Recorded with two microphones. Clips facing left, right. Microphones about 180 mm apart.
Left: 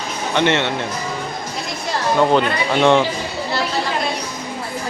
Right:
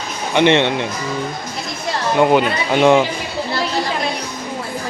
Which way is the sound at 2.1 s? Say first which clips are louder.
Right 2 dB; 15° right (ahead or behind).